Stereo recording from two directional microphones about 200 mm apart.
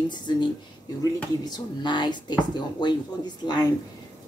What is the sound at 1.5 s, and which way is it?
Speech, 20° left (ahead or behind).